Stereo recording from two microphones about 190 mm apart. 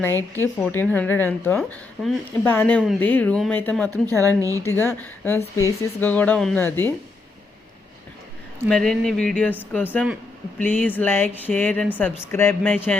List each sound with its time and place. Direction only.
0.3 s a woman's voice: 10° left (ahead or behind)
4.4 s speech: 15° right (ahead or behind)
4.6 s a woman's voice: 10° left (ahead or behind)
8.7 s a woman's voice: centre (ahead or behind)